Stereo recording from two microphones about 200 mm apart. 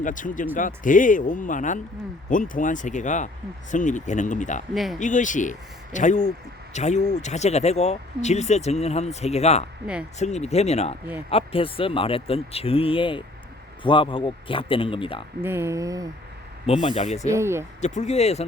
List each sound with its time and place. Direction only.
0.0 s speech: 40° left (ahead or behind)
4.7 s speech: centre (ahead or behind)
4.9 s speech: 40° left (ahead or behind)
9.8 s speech: 5° right (ahead or behind)
10.2 s speech: 35° left (ahead or behind)
15.4 s speech: 10° right (ahead or behind)
16.8 s speech: 35° left (ahead or behind)
17.2 s speech: 15° right (ahead or behind)
17.7 s speech: 35° left (ahead or behind)